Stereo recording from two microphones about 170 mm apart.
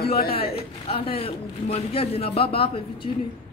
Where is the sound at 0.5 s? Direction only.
35° left (ahead or behind).